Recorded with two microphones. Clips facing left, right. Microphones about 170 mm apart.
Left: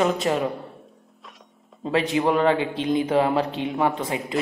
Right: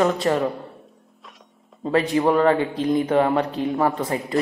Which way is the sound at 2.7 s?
25° left (ahead or behind).